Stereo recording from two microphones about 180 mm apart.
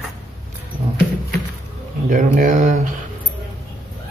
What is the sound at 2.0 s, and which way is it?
Speech, 45° right (ahead or behind).